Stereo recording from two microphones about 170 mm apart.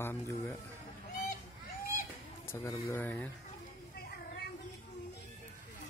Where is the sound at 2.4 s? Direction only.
15° left (ahead or behind).